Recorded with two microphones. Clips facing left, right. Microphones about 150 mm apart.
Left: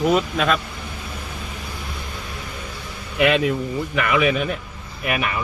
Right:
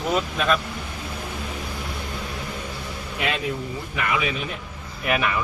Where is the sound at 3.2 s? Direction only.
70° left (ahead or behind).